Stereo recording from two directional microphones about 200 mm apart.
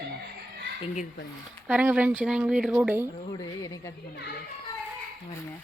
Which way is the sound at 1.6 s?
5° right (ahead or behind).